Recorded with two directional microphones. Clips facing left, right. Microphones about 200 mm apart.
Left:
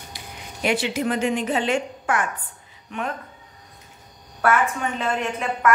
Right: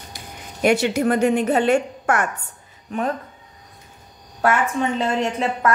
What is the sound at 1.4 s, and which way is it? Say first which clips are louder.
Speech: right 5 dB; 40° right (ahead or behind).